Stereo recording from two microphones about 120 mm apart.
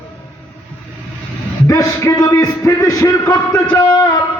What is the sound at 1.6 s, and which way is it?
Music, 25° left (ahead or behind).